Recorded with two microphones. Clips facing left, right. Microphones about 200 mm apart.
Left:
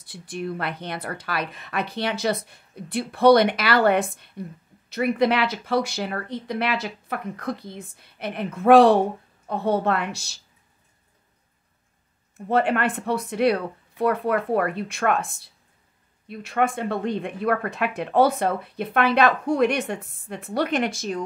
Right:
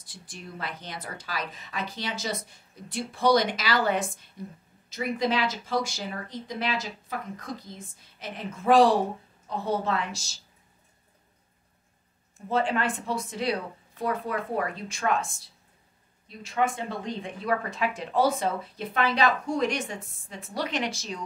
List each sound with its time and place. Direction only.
0.0 s speech: 60° left (ahead or behind)
12.4 s speech: 60° left (ahead or behind)